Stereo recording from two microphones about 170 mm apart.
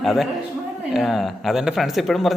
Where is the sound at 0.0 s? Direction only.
Centre (ahead or behind).